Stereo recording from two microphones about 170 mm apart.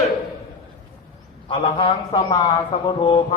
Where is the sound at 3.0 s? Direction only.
30° left (ahead or behind).